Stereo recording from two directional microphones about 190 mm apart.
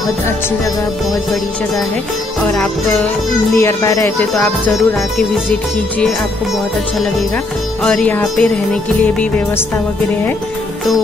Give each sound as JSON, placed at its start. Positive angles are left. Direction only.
{"t": 2.4, "sound": "speech", "side_deg": 5}
{"t": 4.4, "sound": "music", "side_deg": 5}
{"t": 7.8, "sound": "speech", "side_deg": 5}